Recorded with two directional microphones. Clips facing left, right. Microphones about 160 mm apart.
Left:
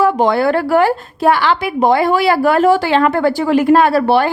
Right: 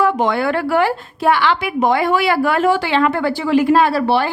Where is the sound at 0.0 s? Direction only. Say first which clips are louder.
Left 4 dB; 35° left (ahead or behind).